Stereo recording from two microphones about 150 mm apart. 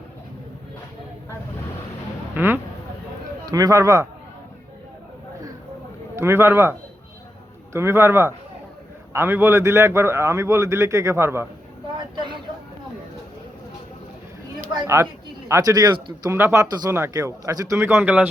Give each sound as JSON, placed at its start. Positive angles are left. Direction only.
{"t": 2.3, "sound": "speech", "side_deg": -15}
{"t": 6.1, "sound": "a man's voice", "side_deg": -15}
{"t": 11.9, "sound": "vehicle", "side_deg": -30}
{"t": 15.4, "sound": "a man's voice", "side_deg": -20}